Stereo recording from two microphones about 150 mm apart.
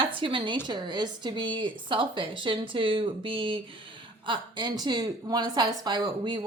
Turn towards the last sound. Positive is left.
turn(degrees=-30)  # may be behind; listen again after turning